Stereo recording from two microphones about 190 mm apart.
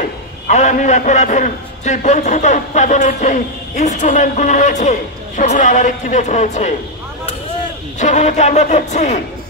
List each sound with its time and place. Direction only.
0.5 s a man's voice: 40° left (ahead or behind)
8.0 s a man's voice: 40° left (ahead or behind)